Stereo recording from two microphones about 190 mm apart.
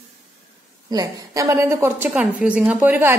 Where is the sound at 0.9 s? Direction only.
20° right (ahead or behind).